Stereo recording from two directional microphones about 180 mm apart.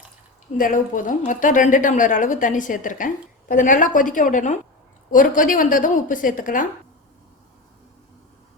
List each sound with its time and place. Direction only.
0.5 s a woman's voice: 45° left (ahead or behind)